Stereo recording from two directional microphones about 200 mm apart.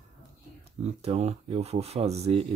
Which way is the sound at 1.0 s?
30° right (ahead or behind).